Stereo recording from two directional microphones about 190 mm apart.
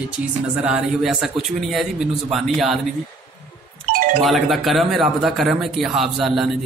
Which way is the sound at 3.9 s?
45° right (ahead or behind).